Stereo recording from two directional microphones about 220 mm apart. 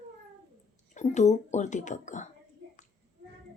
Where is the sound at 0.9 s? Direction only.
30° left (ahead or behind).